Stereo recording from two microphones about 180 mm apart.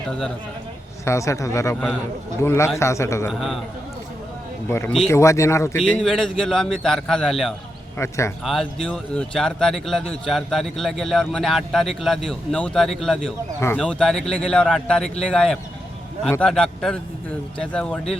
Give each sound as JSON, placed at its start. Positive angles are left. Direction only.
{"t": 1.0, "sound": "a man's voice", "side_deg": 15}
{"t": 5.0, "sound": "a man's voice", "side_deg": 15}
{"t": 5.7, "sound": "a man's voice", "side_deg": 5}
{"t": 7.9, "sound": "a man's voice", "side_deg": 15}
{"t": 8.4, "sound": "a man's voice", "side_deg": 5}